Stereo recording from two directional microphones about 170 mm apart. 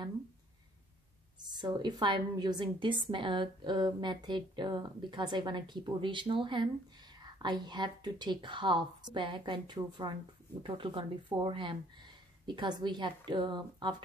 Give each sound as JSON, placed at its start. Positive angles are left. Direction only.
{"t": 1.5, "sound": "a woman's voice", "side_deg": -25}